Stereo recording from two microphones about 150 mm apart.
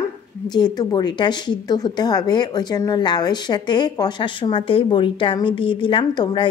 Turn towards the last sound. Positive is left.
turn(degrees=35)  # may be behind; listen again after turning